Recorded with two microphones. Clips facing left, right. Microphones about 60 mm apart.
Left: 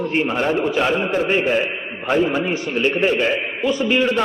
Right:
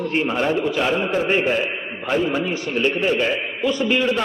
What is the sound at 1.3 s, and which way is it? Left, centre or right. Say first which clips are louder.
Speech: even; centre.